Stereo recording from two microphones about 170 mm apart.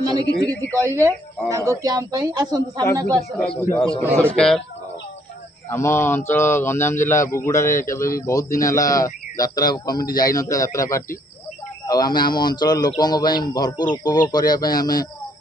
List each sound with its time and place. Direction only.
0.8 s speech: 15° right (ahead or behind)
3.3 s speech: 10° left (ahead or behind)
5.7 s speech: 15° left (ahead or behind)